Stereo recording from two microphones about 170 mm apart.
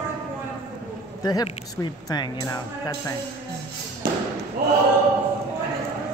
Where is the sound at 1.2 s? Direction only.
20° left (ahead or behind).